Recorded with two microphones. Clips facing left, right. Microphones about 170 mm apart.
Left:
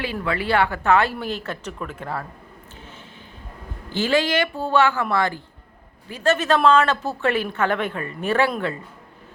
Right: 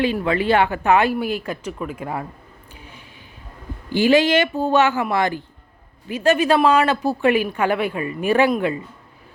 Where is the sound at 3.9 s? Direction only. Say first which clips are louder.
Right 5 dB; 15° right (ahead or behind).